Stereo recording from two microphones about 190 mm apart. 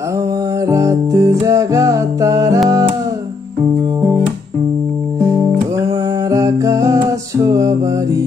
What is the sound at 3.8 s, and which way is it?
Guitar, 10° right (ahead or behind).